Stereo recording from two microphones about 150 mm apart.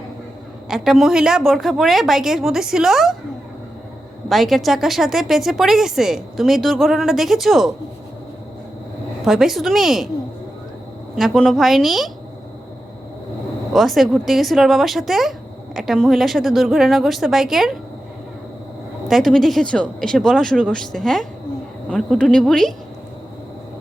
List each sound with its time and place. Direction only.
0.7 s speech: centre (ahead or behind)
4.3 s speech: centre (ahead or behind)
9.2 s speech: 5° right (ahead or behind)
11.1 s speech: centre (ahead or behind)
13.7 s speech: centre (ahead or behind)
19.0 s speech: centre (ahead or behind)